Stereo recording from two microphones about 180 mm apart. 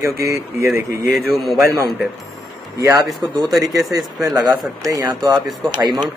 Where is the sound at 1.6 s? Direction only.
15° right (ahead or behind).